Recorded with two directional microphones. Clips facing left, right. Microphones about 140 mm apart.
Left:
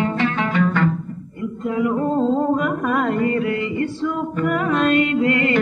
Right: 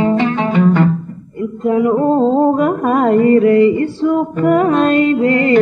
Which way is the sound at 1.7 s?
35° right (ahead or behind).